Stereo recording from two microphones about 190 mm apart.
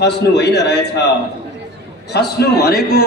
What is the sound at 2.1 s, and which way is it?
Speech, 55° left (ahead or behind).